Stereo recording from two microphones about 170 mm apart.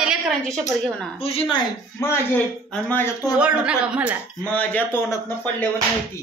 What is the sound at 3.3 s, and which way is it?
Speech, 5° right (ahead or behind).